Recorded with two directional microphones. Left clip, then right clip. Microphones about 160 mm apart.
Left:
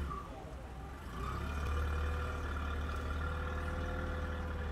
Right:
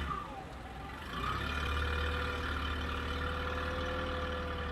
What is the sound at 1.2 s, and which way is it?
Vehicle, 25° right (ahead or behind).